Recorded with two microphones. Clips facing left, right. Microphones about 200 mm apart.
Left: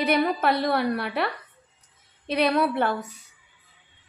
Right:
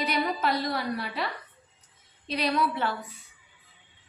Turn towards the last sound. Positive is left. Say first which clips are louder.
# left 5 dB
turn(degrees=50)  # may be behind; listen again after turning